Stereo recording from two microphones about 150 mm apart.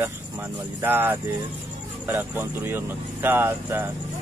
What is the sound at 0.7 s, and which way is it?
Speech, 15° right (ahead or behind).